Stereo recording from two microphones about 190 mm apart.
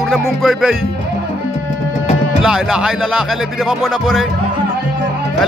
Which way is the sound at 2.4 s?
5° right (ahead or behind).